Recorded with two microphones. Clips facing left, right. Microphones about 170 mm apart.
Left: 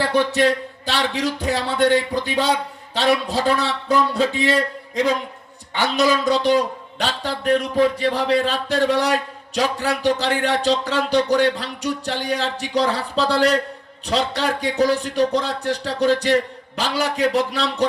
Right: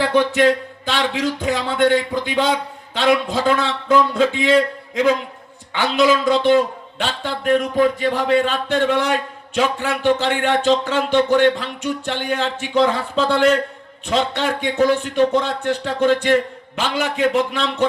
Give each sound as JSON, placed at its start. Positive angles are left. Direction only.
{"t": 0.1, "sound": "speech", "side_deg": 40}
{"t": 6.3, "sound": "speech", "side_deg": 40}